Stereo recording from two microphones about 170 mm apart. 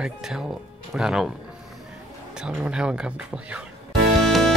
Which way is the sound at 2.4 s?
5° right (ahead or behind).